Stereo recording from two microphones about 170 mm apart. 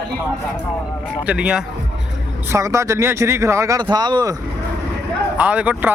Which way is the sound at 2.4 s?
15° right (ahead or behind).